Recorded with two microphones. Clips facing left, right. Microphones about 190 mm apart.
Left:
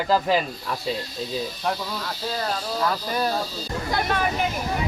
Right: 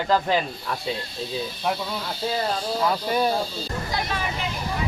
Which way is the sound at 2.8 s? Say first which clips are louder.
Right 2 dB; 5° right (ahead or behind).